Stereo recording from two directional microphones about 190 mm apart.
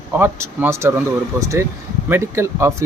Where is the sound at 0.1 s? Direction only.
10° right (ahead or behind).